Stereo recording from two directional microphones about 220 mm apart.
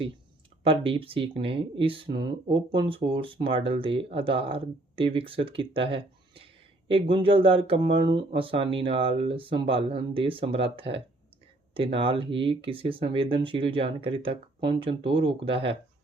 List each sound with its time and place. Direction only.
0.6 s speech: 25° right (ahead or behind)
11.7 s speech: 25° right (ahead or behind)